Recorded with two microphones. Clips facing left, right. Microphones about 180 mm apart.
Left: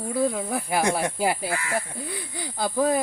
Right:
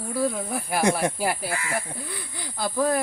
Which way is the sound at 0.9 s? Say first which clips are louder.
Left 1 dB; 20° left (ahead or behind).